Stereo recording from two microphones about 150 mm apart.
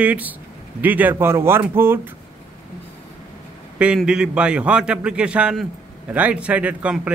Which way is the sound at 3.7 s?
5° right (ahead or behind).